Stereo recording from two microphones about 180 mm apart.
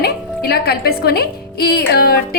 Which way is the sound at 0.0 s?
60° left (ahead or behind).